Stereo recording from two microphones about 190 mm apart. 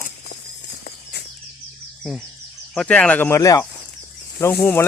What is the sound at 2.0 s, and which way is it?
Speech, 5° left (ahead or behind).